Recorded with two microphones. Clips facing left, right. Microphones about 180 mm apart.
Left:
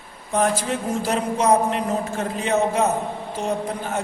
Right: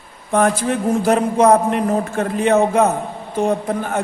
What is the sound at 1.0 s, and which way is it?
A man's voice, 55° right (ahead or behind).